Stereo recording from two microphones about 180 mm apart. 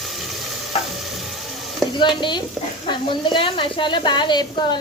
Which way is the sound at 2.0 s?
25° left (ahead or behind).